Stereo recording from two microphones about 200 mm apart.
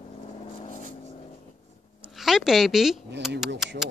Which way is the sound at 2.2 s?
Centre (ahead or behind).